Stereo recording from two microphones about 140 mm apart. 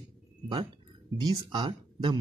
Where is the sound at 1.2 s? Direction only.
30° right (ahead or behind).